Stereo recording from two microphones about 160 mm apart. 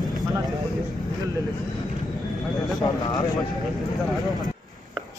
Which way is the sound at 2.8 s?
25° left (ahead or behind).